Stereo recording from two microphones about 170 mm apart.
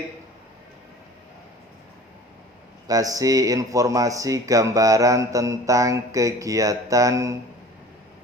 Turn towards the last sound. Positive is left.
turn(degrees=-20)  # may be behind; listen again after turning